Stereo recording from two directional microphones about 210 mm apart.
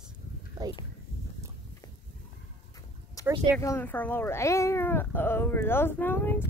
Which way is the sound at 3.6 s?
10° left (ahead or behind).